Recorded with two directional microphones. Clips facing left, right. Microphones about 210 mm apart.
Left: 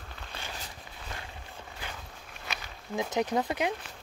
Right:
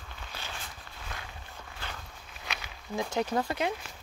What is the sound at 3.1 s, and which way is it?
Speech, 15° left (ahead or behind).